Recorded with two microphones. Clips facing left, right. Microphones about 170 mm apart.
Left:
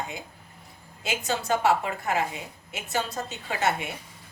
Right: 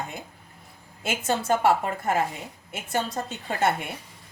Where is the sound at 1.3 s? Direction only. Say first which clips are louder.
Right 2 dB; 50° right (ahead or behind).